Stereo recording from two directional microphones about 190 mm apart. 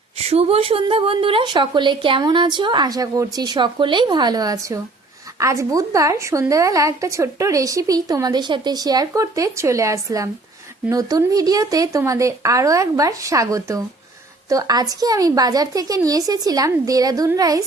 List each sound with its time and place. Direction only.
0.2 s a woman's voice: 30° right (ahead or behind)